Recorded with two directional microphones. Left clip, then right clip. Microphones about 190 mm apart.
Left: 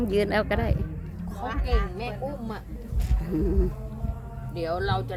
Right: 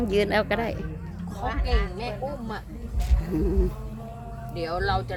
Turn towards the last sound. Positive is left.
turn(degrees=20)  # may be behind; listen again after turning